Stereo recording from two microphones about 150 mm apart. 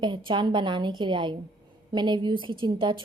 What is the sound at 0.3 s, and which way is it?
A woman's voice, 30° right (ahead or behind).